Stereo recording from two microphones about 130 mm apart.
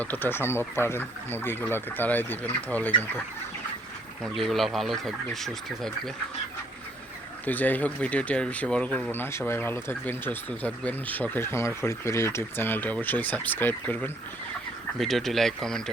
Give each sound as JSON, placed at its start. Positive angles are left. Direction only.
{"t": 0.0, "sound": "speech", "side_deg": 15}
{"t": 4.2, "sound": "speech", "side_deg": 0}
{"t": 7.4, "sound": "speech", "side_deg": 15}
{"t": 14.9, "sound": "speech", "side_deg": 0}